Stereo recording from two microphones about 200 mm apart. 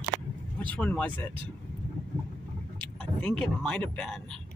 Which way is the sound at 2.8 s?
5° left (ahead or behind).